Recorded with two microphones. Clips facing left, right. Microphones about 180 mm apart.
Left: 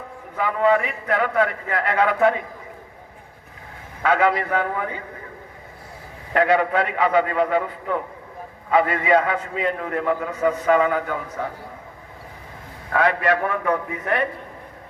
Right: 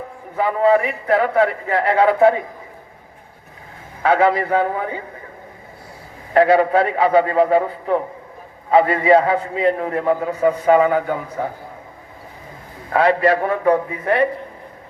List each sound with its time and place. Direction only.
0.3 s a man's voice: 35° right (ahead or behind)
4.0 s a man's voice: 30° right (ahead or behind)
6.3 s a man's voice: 35° right (ahead or behind)
12.9 s a man's voice: 30° right (ahead or behind)